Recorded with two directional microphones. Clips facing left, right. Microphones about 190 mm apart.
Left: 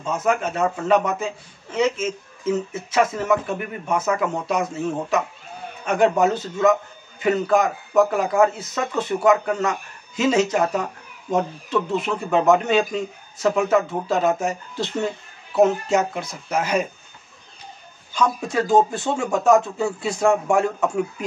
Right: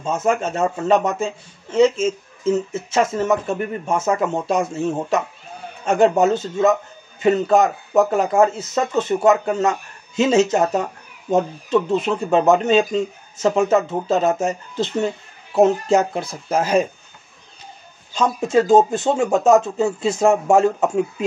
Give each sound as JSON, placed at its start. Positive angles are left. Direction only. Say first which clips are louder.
{"t": 0.0, "sound": "a man's voice", "louder": "right 2 dB", "side_deg": -25}
{"t": 5.9, "sound": "a man's voice", "louder": "right 3 dB", "side_deg": -25}
{"t": 18.1, "sound": "a man's voice", "louder": "right 4 dB", "side_deg": -25}